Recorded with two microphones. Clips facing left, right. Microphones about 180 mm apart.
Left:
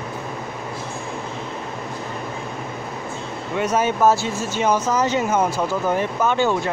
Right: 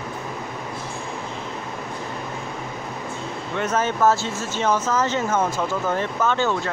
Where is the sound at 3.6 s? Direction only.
15° left (ahead or behind).